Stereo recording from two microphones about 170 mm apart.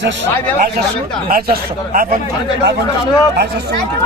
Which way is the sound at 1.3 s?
60° right (ahead or behind).